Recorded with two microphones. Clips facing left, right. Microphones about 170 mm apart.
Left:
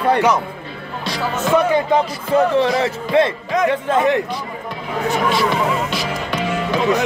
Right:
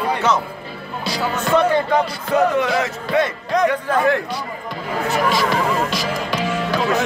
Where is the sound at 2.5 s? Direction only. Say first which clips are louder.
Left 3 dB; 30° left (ahead or behind).